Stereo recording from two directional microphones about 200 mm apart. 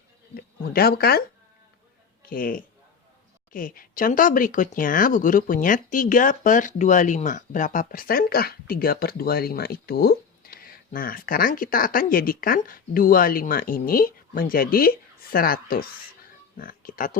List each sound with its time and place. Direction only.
0.6 s speech: 50° left (ahead or behind)
2.2 s speech: 45° left (ahead or behind)